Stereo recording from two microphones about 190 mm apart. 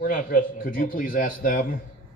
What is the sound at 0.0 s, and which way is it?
Speech, 45° left (ahead or behind).